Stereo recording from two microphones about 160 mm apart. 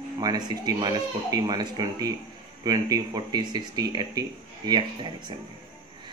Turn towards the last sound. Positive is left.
turn(degrees=-25)  # may be behind; listen again after turning